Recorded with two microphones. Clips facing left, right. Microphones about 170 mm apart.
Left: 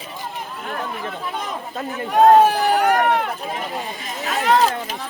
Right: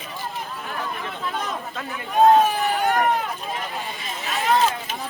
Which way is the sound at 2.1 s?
75° left (ahead or behind).